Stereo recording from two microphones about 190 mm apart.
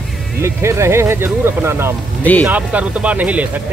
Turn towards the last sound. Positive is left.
turn(degrees=-5)  # may be behind; listen again after turning